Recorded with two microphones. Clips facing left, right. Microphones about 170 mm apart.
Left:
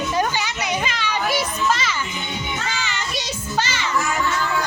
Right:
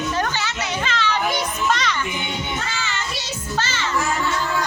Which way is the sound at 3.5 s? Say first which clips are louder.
Left 1 dB; 15° left (ahead or behind).